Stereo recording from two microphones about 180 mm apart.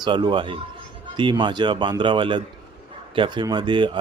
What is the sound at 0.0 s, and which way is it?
Speech, 25° right (ahead or behind).